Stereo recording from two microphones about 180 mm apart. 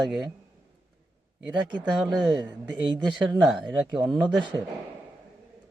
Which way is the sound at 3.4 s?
Centre (ahead or behind).